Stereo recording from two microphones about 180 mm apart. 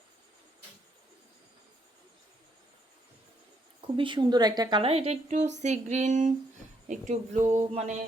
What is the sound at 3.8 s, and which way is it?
A woman's voice, 30° right (ahead or behind).